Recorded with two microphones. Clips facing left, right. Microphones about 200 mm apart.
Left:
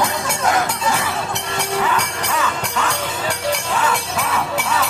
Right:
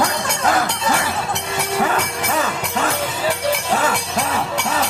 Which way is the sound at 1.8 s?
40° right (ahead or behind).